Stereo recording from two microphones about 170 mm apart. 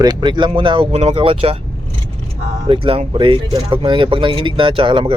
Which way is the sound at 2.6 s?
30° right (ahead or behind).